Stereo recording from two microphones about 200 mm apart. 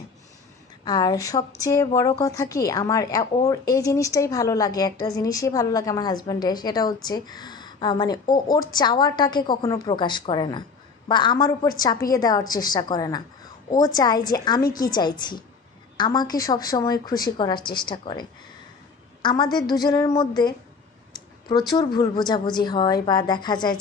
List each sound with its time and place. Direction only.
0.8 s a woman's voice: 20° left (ahead or behind)
19.2 s a woman's voice: 20° left (ahead or behind)
21.7 s a woman's voice: 20° left (ahead or behind)